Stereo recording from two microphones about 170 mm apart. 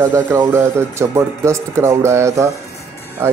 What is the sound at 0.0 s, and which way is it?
Speech, 15° right (ahead or behind).